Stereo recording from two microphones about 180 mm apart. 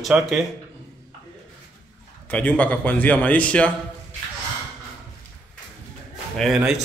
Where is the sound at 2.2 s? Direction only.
10° left (ahead or behind).